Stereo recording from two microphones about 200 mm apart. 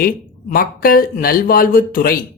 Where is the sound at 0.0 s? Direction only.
45° left (ahead or behind).